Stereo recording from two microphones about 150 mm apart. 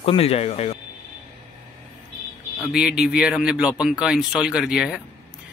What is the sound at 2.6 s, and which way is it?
Speech, 5° right (ahead or behind).